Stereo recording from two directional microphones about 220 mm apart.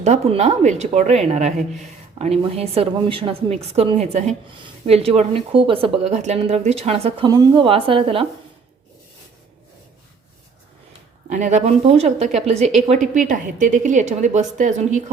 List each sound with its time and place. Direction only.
0.0 s a woman's voice: 30° right (ahead or behind)
11.3 s a woman's voice: 35° right (ahead or behind)